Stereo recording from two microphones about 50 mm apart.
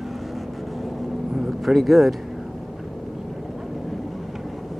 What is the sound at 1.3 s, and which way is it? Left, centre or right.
Vehicle, centre.